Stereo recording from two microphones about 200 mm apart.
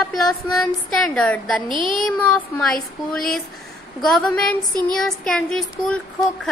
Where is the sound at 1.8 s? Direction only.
40° left (ahead or behind).